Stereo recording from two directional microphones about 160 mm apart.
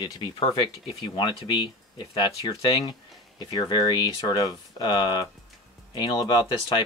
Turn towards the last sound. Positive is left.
turn(degrees=25)  # may be behind; listen again after turning